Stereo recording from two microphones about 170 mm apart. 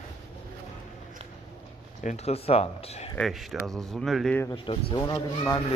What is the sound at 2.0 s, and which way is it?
Speech, 40° left (ahead or behind).